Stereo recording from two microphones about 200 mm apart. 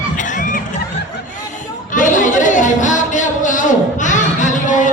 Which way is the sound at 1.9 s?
40° left (ahead or behind).